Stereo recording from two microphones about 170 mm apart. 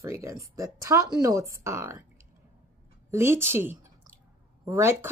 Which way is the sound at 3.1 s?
15° right (ahead or behind).